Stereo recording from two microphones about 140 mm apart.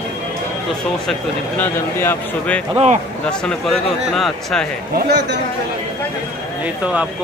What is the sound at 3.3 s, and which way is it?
A man's voice, 5° left (ahead or behind).